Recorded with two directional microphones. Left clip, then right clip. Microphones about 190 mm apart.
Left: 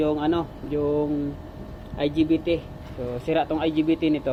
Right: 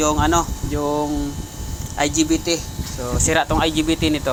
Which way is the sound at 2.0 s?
60° right (ahead or behind).